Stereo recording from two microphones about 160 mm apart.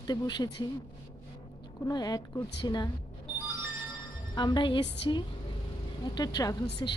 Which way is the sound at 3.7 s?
30° left (ahead or behind).